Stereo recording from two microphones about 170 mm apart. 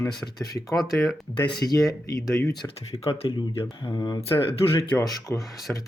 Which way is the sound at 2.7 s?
35° left (ahead or behind).